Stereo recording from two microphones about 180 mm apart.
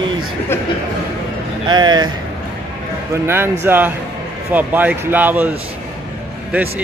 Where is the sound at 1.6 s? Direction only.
25° right (ahead or behind).